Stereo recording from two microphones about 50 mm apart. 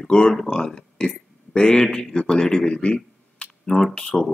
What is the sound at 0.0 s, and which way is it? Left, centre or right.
Speech, centre.